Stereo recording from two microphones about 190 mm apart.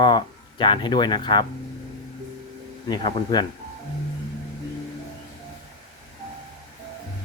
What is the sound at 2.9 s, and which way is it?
Speech, 25° left (ahead or behind).